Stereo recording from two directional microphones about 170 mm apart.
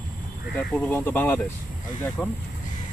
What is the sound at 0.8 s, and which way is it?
Speech, 10° left (ahead or behind).